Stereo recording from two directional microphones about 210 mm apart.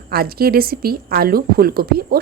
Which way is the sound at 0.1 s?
45° right (ahead or behind).